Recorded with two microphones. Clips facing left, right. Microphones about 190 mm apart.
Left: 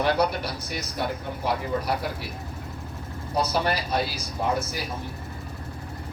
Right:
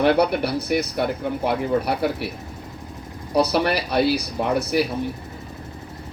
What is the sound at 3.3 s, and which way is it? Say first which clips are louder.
Speech: right 6 dB; 70° right (ahead or behind).